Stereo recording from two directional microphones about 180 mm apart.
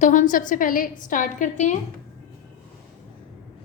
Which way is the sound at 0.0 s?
45° left (ahead or behind).